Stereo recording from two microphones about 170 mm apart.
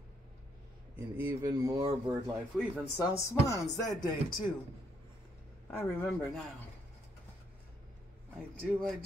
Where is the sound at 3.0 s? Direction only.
20° left (ahead or behind).